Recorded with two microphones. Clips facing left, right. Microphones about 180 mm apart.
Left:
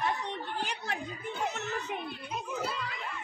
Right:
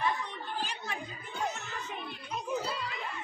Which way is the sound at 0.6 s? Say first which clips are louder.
Right 1 dB; 65° left (ahead or behind).